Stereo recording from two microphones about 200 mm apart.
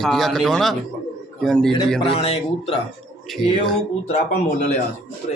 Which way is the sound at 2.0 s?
30° left (ahead or behind).